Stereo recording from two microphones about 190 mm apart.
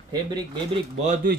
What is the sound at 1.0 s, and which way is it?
Speech, 45° right (ahead or behind).